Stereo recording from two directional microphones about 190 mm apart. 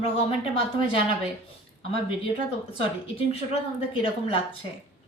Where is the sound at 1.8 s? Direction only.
30° left (ahead or behind).